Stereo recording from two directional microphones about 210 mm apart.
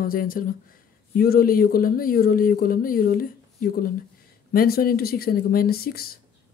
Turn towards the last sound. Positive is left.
turn(degrees=45)  # may be behind; listen again after turning